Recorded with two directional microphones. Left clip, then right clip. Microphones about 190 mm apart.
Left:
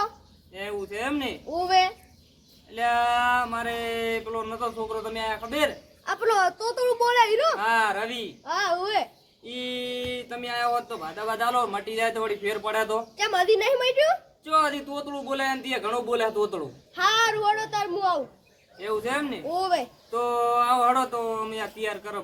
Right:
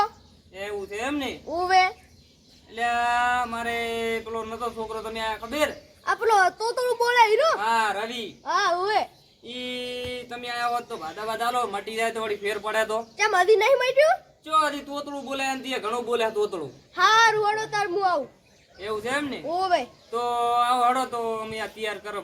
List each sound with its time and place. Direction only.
0.5 s speech: centre (ahead or behind)
1.5 s a child's voice: 35° right (ahead or behind)
2.7 s speech: 5° right (ahead or behind)
6.1 s speech: 45° right (ahead or behind)
7.6 s speech: 5° right (ahead or behind)
8.4 s a child's voice: 40° right (ahead or behind)
9.5 s speech: 5° right (ahead or behind)
13.1 s a child's voice: 35° right (ahead or behind)
14.4 s a man's voice: 5° right (ahead or behind)
16.9 s a child's voice: 40° right (ahead or behind)
18.8 s a man's voice: 5° right (ahead or behind)
19.5 s a child's voice: 35° right (ahead or behind)
20.1 s speech: 5° right (ahead or behind)